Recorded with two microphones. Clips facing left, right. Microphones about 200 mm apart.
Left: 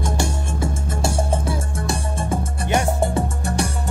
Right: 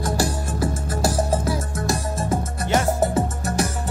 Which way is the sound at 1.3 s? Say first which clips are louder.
Right 1 dB; 30° left (ahead or behind).